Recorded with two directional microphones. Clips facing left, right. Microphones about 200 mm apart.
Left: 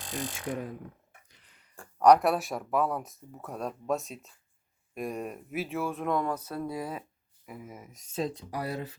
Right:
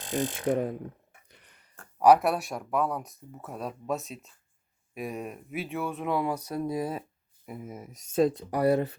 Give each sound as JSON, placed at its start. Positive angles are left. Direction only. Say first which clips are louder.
{"t": 0.3, "sound": "speech", "louder": "right 10 dB", "side_deg": -55}
{"t": 1.3, "sound": "a sound", "louder": "right 5 dB", "side_deg": -55}
{"t": 2.0, "sound": "speech", "louder": "even", "side_deg": -5}
{"t": 8.1, "sound": "speech", "louder": "right 8 dB", "side_deg": -55}